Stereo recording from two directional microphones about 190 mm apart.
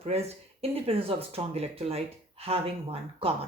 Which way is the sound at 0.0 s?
35° right (ahead or behind).